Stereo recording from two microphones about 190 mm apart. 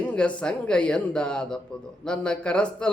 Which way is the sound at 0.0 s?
5° left (ahead or behind).